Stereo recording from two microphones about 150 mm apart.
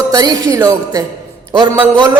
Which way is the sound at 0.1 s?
25° right (ahead or behind).